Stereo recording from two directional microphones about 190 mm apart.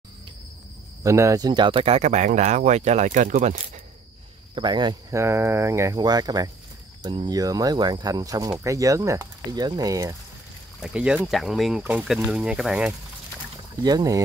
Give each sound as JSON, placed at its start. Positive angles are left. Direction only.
{"t": 1.0, "sound": "speech", "side_deg": -15}
{"t": 4.6, "sound": "speech", "side_deg": -25}
{"t": 10.8, "sound": "speech", "side_deg": -5}
{"t": 13.8, "sound": "speech", "side_deg": -20}